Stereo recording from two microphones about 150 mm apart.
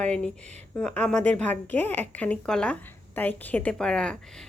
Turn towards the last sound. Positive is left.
turn(degrees=5)  # may be behind; listen again after turning